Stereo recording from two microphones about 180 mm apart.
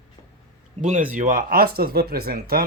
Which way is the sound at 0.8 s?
45° right (ahead or behind).